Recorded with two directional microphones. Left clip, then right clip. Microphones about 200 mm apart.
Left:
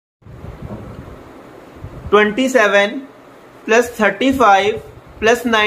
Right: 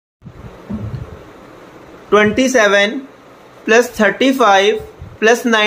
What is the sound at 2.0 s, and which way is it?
A woman's voice, 20° right (ahead or behind).